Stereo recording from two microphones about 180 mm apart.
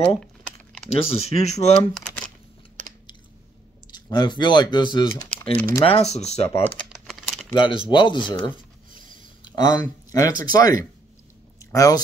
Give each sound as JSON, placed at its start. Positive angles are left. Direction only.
{"t": 0.8, "sound": "speech", "side_deg": 35}
{"t": 2.0, "sound": "crumpling", "side_deg": 5}
{"t": 2.8, "sound": "chewing", "side_deg": -45}
{"t": 3.9, "sound": "speech", "side_deg": 25}
{"t": 5.9, "sound": "speech", "side_deg": 35}
{"t": 6.9, "sound": "typing", "side_deg": 0}
{"t": 7.5, "sound": "speech", "side_deg": 25}
{"t": 8.9, "sound": "a sound", "side_deg": 25}
{"t": 10.5, "sound": "speech", "side_deg": 20}